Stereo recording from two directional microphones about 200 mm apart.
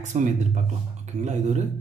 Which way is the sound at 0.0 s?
35° right (ahead or behind).